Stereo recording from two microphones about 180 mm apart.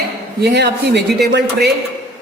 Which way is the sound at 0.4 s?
70° right (ahead or behind).